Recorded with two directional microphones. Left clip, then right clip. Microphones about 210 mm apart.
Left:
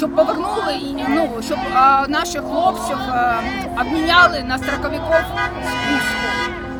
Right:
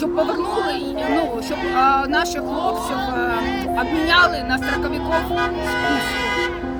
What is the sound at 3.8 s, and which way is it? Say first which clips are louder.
Speech: left 3 dB; 5° left (ahead or behind).